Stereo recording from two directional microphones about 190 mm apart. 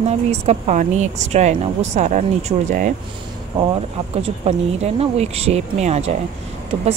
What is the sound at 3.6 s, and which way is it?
A woman's voice, 30° right (ahead or behind).